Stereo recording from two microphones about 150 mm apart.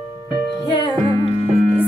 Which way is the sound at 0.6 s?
30° left (ahead or behind).